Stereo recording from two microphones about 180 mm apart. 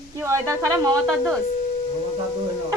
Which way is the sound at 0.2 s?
15° right (ahead or behind).